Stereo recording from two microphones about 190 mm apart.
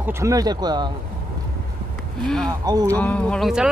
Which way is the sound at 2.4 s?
20° right (ahead or behind).